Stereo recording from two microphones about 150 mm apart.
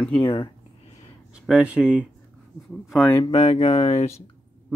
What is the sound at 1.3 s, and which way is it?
Speech, 5° right (ahead or behind).